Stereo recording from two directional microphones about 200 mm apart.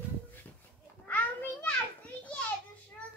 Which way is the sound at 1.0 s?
10° left (ahead or behind).